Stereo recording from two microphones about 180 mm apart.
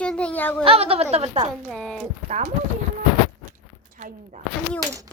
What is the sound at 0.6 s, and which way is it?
Speech, 30° right (ahead or behind).